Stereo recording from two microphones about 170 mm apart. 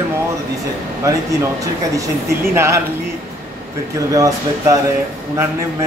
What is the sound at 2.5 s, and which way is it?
Speech, 15° right (ahead or behind).